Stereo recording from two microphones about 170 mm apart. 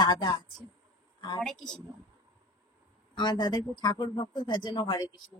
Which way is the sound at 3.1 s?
25° left (ahead or behind).